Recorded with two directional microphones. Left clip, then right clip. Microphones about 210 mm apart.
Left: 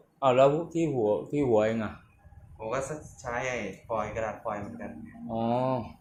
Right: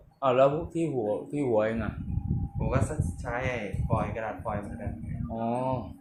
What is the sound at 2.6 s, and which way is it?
Speech, centre (ahead or behind).